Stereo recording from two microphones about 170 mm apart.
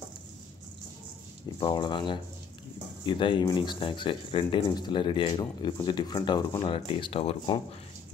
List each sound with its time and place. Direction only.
1.6 s speech: 25° left (ahead or behind)